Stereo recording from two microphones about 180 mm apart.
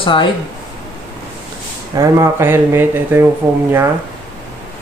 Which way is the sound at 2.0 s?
15° right (ahead or behind).